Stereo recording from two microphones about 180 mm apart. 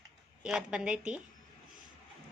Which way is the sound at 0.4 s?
5° right (ahead or behind).